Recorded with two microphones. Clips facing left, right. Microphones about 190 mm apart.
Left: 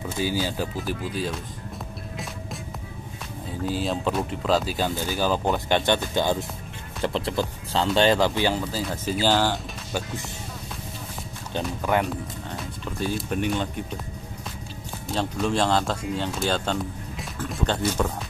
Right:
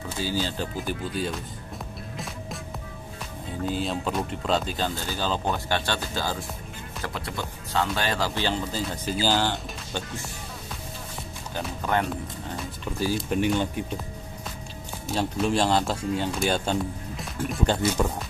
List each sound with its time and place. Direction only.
0.2 s speech: 10° left (ahead or behind)
3.6 s speech: centre (ahead or behind); by 8.3 s 25° left (ahead or behind)
8.4 s speech: 10° left (ahead or behind)
11.8 s speech: 5° left (ahead or behind)
13.0 s speech: 5° right (ahead or behind)
15.1 s speech: 5° right (ahead or behind)